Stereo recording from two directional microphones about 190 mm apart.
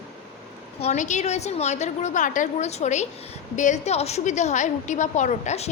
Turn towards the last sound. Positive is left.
turn(degrees=35)  # may be behind; listen again after turning